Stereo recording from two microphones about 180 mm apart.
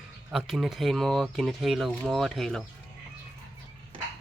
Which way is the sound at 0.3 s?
Centre (ahead or behind).